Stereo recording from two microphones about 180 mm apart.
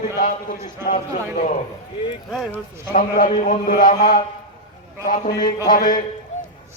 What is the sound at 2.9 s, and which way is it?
A man's voice, 45° left (ahead or behind).